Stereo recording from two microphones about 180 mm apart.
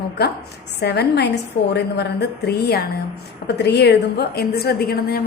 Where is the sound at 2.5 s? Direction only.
60° left (ahead or behind).